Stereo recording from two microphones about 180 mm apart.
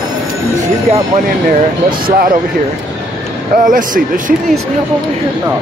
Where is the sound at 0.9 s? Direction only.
40° right (ahead or behind).